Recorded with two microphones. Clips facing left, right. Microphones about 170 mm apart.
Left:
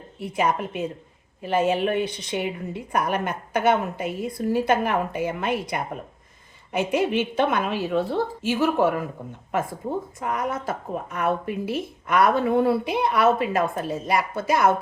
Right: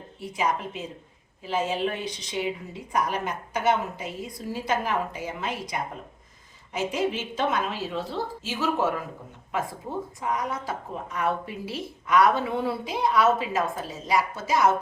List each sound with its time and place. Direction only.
0.2 s a woman's voice: 60° left (ahead or behind)
10.2 s a woman's voice: 55° left (ahead or behind)